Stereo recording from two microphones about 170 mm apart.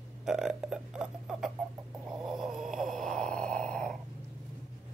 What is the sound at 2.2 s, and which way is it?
Snoring, centre (ahead or behind).